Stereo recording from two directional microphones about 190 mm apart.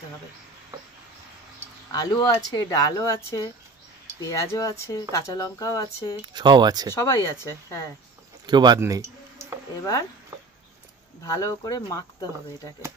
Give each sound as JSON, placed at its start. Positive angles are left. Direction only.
{"t": 1.9, "sound": "speech", "side_deg": 20}
{"t": 6.2, "sound": "speech", "side_deg": -25}
{"t": 7.1, "sound": "speech", "side_deg": 15}
{"t": 8.5, "sound": "a sound", "side_deg": -20}
{"t": 11.2, "sound": "speech", "side_deg": 15}